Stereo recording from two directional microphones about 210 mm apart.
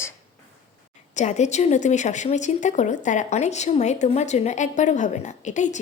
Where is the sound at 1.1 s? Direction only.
35° left (ahead or behind).